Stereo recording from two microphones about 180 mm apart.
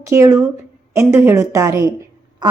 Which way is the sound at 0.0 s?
15° right (ahead or behind).